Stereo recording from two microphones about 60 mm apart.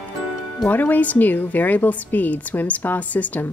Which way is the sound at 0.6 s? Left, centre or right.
Left.